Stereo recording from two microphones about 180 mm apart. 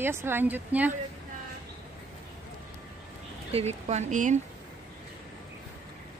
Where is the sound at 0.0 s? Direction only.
15° right (ahead or behind).